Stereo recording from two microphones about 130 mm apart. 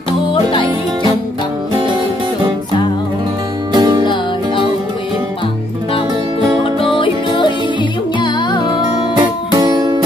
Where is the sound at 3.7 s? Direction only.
35° right (ahead or behind).